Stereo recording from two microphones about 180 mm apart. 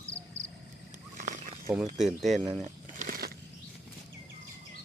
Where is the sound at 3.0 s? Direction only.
50° right (ahead or behind).